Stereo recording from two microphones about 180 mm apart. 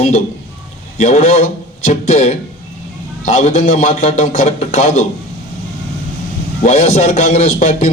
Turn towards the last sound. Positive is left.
turn(degrees=35)  # may be behind; listen again after turning